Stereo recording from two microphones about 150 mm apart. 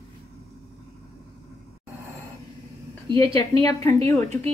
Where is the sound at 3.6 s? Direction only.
20° left (ahead or behind).